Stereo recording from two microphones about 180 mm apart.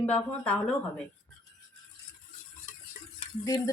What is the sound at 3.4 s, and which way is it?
Speech, 20° left (ahead or behind).